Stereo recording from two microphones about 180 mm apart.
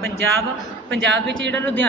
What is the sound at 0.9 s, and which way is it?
Speech, 80° right.